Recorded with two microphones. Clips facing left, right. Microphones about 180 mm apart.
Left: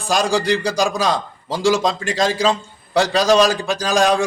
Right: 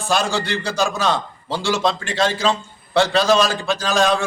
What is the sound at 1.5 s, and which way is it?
Speech, 35° left (ahead or behind).